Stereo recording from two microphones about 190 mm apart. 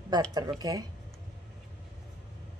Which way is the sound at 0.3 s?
20° right (ahead or behind).